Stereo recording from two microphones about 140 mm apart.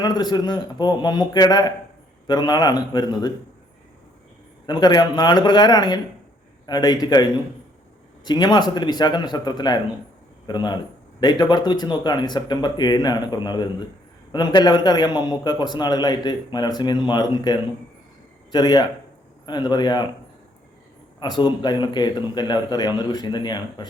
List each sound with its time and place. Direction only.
0.0 s a man's voice: 30° left (ahead or behind)
4.6 s a man's voice: 30° left (ahead or behind)
21.2 s a man's voice: 30° left (ahead or behind)